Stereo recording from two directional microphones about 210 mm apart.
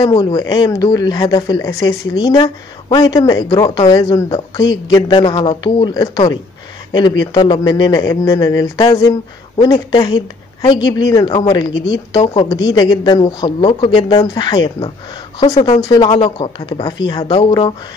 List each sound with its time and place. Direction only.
0.0 s speech: 20° left (ahead or behind)
15.6 s speech: 20° left (ahead or behind)